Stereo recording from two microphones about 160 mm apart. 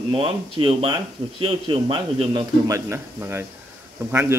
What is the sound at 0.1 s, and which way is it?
Speech, 35° right (ahead or behind).